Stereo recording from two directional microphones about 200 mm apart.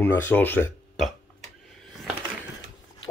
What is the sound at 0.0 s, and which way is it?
Speech, 10° left (ahead or behind).